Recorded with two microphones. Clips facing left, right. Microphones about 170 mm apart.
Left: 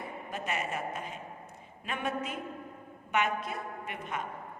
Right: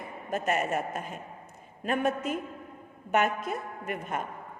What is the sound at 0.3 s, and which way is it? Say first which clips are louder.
A woman's voice: right 8 dB; 45° right (ahead or behind).